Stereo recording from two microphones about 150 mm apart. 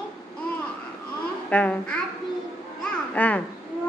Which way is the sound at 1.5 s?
10° left (ahead or behind).